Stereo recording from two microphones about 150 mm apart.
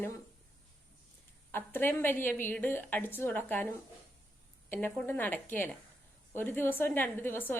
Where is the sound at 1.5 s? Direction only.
15° left (ahead or behind).